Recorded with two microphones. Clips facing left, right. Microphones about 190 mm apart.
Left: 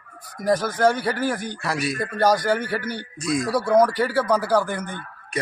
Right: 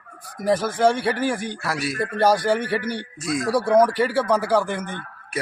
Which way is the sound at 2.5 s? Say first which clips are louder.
Right 2 dB; 30° right (ahead or behind).